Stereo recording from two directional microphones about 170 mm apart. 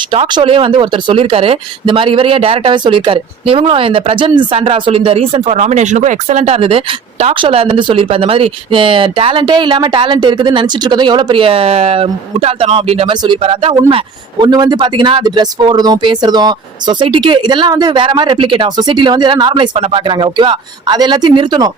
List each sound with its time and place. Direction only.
0.1 s speech: 30° right (ahead or behind)
14.4 s speech: 25° right (ahead or behind)